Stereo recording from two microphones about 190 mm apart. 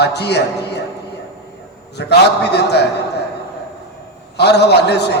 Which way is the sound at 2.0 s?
60° left (ahead or behind).